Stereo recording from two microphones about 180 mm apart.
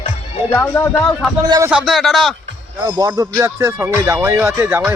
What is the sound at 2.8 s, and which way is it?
Speech, 20° right (ahead or behind).